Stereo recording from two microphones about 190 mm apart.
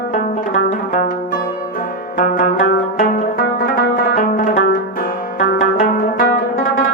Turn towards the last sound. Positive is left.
turn(degrees=50)  # may be behind; listen again after turning